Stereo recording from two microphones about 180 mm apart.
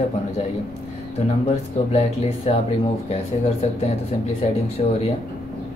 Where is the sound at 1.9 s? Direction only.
35° left (ahead or behind).